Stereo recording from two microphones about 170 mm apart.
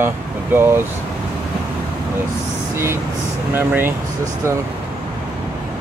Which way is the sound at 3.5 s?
10° right (ahead or behind).